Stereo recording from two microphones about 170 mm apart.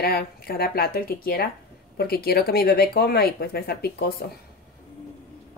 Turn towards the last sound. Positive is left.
turn(degrees=65)  # may be behind; listen again after turning